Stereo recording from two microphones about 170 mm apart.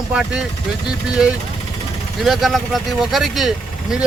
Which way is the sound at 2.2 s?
Centre (ahead or behind).